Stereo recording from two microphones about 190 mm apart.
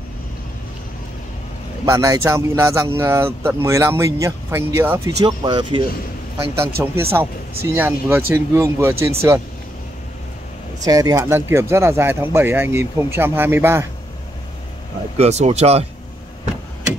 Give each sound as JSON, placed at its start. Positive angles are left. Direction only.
{"t": 1.9, "sound": "speech", "side_deg": -15}
{"t": 6.8, "sound": "speech", "side_deg": -10}
{"t": 10.8, "sound": "speech", "side_deg": -20}
{"t": 15.1, "sound": "speech", "side_deg": -35}